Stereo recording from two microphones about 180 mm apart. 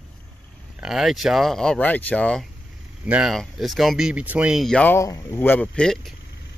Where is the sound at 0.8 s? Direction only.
Centre (ahead or behind).